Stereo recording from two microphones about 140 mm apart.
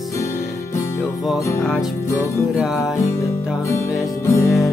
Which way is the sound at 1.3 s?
20° left (ahead or behind).